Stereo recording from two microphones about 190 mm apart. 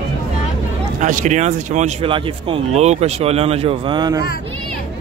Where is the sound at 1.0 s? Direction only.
40° right (ahead or behind); by 4.2 s 25° right (ahead or behind).